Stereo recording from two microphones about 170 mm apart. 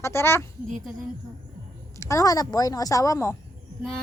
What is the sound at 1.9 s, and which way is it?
A woman's voice, 15° left (ahead or behind).